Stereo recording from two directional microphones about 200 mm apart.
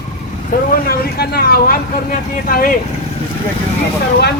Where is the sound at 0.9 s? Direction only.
50° left (ahead or behind).